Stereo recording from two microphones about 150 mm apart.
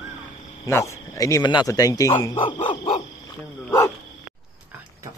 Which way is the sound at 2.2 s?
30° left (ahead or behind).